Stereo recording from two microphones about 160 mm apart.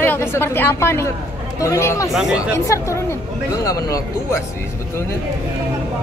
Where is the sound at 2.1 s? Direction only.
5° right (ahead or behind).